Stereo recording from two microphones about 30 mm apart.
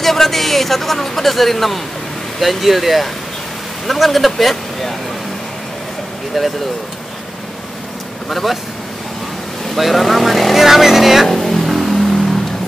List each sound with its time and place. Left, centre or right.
0.0 s speech: centre
8.3 s speech: centre
9.8 s speech: centre
10.5 s speech: centre
11.2 s vehicle: centre
11.6 s vehicle: centre
11.9 s vehicle: centre